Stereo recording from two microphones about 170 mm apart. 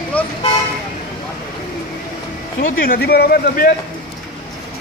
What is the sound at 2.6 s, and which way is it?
Speech, 60° left (ahead or behind).